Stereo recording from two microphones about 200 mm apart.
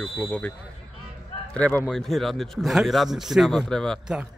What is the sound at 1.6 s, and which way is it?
Speech, 5° left (ahead or behind).